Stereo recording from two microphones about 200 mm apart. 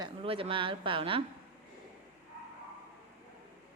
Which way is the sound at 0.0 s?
25° right (ahead or behind).